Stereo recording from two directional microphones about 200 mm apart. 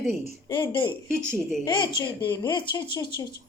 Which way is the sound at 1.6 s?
20° left (ahead or behind).